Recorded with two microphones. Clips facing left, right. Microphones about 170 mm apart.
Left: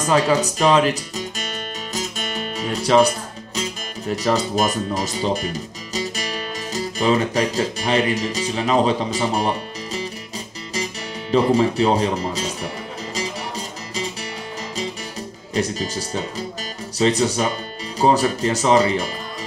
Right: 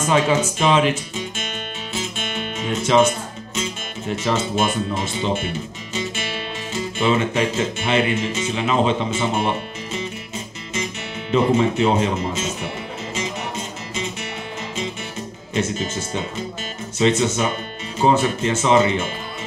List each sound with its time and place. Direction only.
0.0 s speech: 35° left (ahead or behind)
11.3 s music: 35° left (ahead or behind)
15.5 s speech: 35° left (ahead or behind)